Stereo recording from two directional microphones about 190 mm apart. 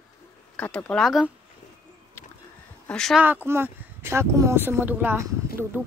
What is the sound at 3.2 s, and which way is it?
Speech, 10° right (ahead or behind).